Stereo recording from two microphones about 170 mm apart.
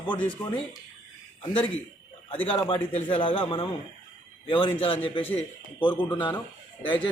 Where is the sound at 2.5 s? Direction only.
30° left (ahead or behind).